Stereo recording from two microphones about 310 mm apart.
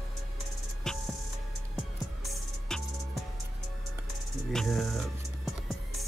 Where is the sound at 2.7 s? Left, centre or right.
Centre.